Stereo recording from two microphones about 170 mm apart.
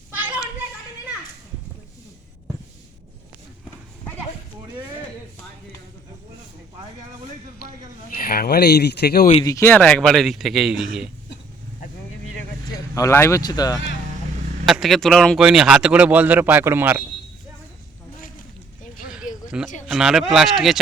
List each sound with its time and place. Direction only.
0.2 s children playing: 10° right (ahead or behind)
8.2 s speech: 65° left (ahead or behind)
9.4 s speech: 20° left (ahead or behind); by 10.8 s centre (ahead or behind)
12.9 s speech: 15° left (ahead or behind)
14.7 s speech: centre (ahead or behind)
18.2 s a sound: 55° left (ahead or behind)
19.5 s a sound: 5° right (ahead or behind)
19.9 s speech: 5° right (ahead or behind)